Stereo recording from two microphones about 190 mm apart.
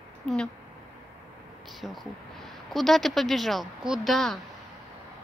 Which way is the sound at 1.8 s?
Centre (ahead or behind).